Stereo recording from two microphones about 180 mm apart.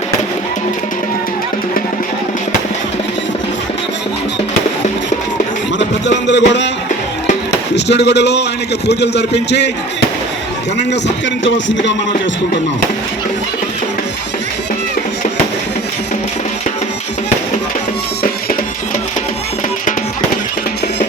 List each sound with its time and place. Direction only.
6.1 s music: 80° left
7.9 s a man's voice: 70° left (ahead or behind)
11.4 s a sound: 90° left